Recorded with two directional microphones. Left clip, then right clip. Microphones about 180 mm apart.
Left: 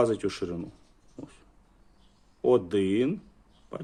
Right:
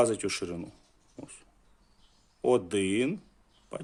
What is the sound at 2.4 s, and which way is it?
Speech, 15° right (ahead or behind).